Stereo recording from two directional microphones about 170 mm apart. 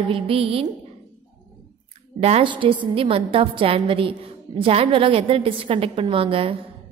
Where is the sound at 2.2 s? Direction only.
35° right (ahead or behind).